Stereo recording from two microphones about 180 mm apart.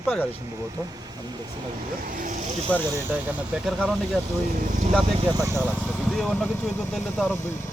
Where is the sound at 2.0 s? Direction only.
50° right (ahead or behind).